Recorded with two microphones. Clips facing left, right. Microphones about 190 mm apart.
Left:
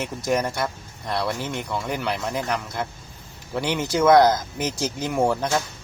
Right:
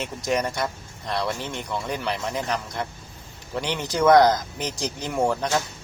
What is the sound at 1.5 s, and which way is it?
Speech, 20° left (ahead or behind).